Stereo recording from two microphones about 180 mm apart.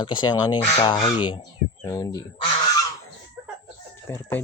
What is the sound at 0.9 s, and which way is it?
Speech, 35° left (ahead or behind).